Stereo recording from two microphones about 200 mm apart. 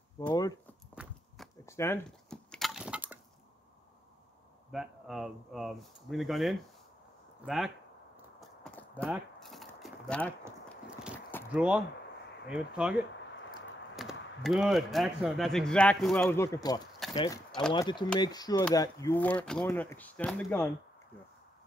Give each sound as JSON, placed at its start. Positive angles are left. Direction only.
{"t": 0.3, "sound": "speech", "side_deg": 20}
{"t": 1.7, "sound": "wood", "side_deg": 15}
{"t": 4.6, "sound": "speech", "side_deg": 0}
{"t": 8.4, "sound": "clip-clop", "side_deg": 5}
{"t": 9.0, "sound": "a sound", "side_deg": -5}
{"t": 11.5, "sound": "speech", "side_deg": -5}
{"t": 13.9, "sound": "speech", "side_deg": 0}
{"t": 17.5, "sound": "a sound", "side_deg": 5}
{"t": 17.7, "sound": "speech", "side_deg": 20}